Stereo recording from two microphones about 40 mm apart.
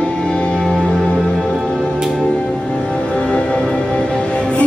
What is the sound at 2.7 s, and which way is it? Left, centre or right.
Music, left.